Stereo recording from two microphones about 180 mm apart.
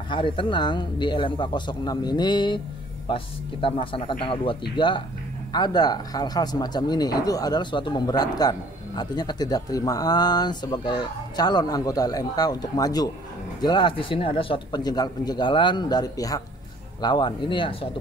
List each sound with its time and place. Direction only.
0.1 s speech: 25° left (ahead or behind)